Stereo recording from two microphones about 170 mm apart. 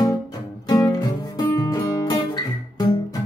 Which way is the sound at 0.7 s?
20° left (ahead or behind).